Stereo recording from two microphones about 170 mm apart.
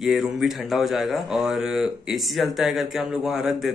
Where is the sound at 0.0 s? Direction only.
Centre (ahead or behind).